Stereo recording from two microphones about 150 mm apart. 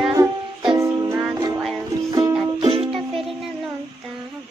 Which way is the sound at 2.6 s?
40° right (ahead or behind).